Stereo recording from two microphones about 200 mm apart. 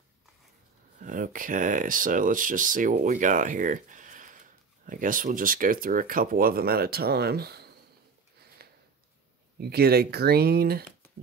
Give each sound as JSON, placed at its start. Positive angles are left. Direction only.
{"t": 0.9, "sound": "speech", "side_deg": -40}
{"t": 9.6, "sound": "speech", "side_deg": -50}